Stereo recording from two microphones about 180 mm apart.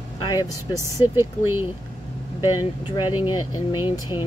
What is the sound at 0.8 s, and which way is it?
Speech, 15° right (ahead or behind).